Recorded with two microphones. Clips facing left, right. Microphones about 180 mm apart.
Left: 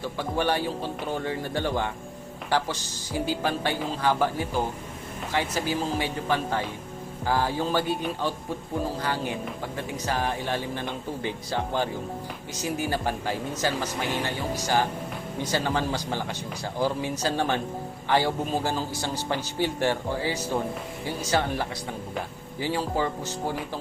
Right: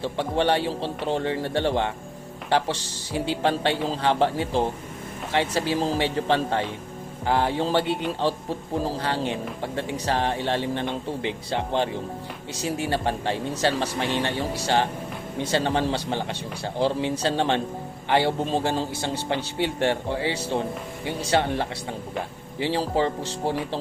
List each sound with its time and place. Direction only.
0.0 s speech: 25° right (ahead or behind)